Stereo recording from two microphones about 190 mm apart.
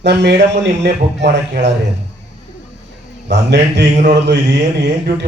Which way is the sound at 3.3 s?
65° right (ahead or behind).